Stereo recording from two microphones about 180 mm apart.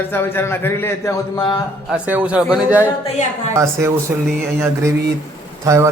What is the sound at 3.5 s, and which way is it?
A man's voice, 15° right (ahead or behind).